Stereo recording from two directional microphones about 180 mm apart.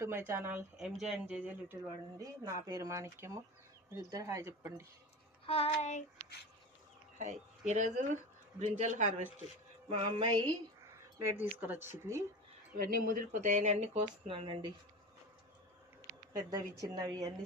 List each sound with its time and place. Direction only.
0.0 s speech: 15° right (ahead or behind)
2.1 s speech: 20° right (ahead or behind)
5.5 s a sound: 35° left (ahead or behind)
7.7 s a man's voice: 40° right (ahead or behind)
10.0 s speech: 30° right (ahead or behind)
11.3 s speech: 10° right (ahead or behind)
12.7 s speech: 50° right (ahead or behind); by 14.7 s 30° right (ahead or behind)
16.3 s a woman's voice: 20° right (ahead or behind)